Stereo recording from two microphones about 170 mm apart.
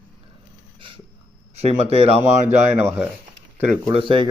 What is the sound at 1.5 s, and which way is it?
Speech, 40° right (ahead or behind).